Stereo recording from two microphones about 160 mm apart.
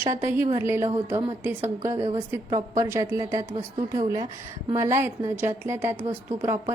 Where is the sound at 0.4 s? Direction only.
20° right (ahead or behind).